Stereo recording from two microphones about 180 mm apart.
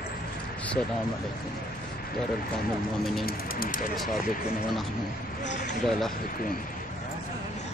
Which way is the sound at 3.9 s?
Centre (ahead or behind).